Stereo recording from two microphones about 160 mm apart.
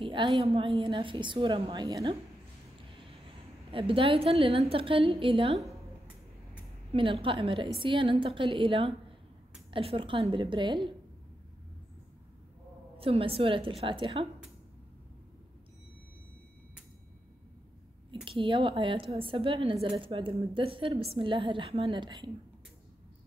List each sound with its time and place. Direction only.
0.0 s a woman's voice: 30° right (ahead or behind)
3.7 s a woman's voice: 35° right (ahead or behind)
6.9 s a woman's voice: 35° right (ahead or behind)
12.9 s a woman's voice: 35° right (ahead or behind)
18.2 s a woman's voice: 30° right (ahead or behind)